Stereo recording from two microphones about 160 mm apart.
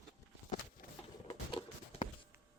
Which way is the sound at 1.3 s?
30° left (ahead or behind).